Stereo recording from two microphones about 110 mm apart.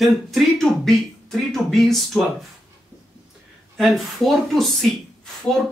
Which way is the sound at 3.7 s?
Centre (ahead or behind).